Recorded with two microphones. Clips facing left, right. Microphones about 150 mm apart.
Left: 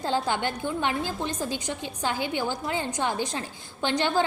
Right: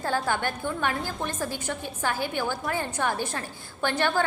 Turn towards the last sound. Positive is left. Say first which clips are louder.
# left 1 dB
turn(degrees=15)  # may be behind; listen again after turning